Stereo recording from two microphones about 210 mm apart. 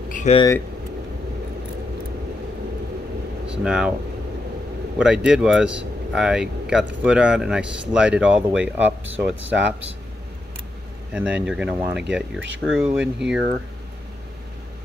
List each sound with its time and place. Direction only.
0.1 s a sound: 35° left (ahead or behind)
3.6 s speech: 5° right (ahead or behind)
4.9 s speech: 5° right (ahead or behind)
11.1 s speech: 5° right (ahead or behind)